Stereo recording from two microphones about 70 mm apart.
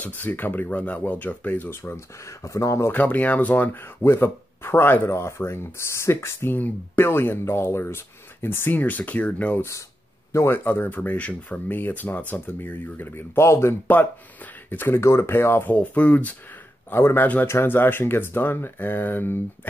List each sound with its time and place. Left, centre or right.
0.0 s speech: left
1.8 s speech: left
2.9 s speech: left
9.6 s speech: left
13.8 s speech: left
14.9 s speech: left
15.7 s speech: left
16.9 s speech: left